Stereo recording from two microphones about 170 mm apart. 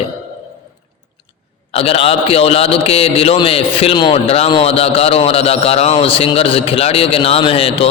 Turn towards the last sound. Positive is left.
turn(degrees=35)  # may be behind; listen again after turning